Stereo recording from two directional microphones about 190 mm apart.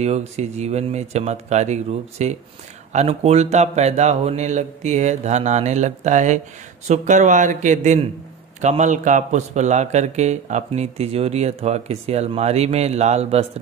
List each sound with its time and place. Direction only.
0.0 s a man's voice: 35° right (ahead or behind)